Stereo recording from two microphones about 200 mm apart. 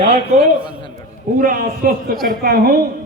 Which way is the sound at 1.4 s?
45° right (ahead or behind).